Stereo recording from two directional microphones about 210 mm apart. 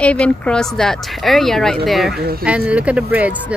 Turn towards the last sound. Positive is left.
turn(degrees=-5)  # may be behind; listen again after turning